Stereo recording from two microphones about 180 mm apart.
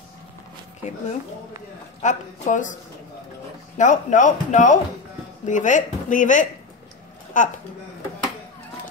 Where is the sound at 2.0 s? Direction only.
40° left (ahead or behind).